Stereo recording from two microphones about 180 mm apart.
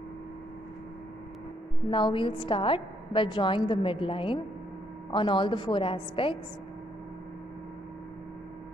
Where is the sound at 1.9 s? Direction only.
30° left (ahead or behind).